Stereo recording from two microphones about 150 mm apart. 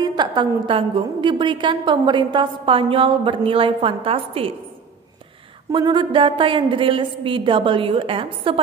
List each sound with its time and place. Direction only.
0.0 s a woman's voice: 30° right (ahead or behind)
5.7 s a woman's voice: 30° right (ahead or behind)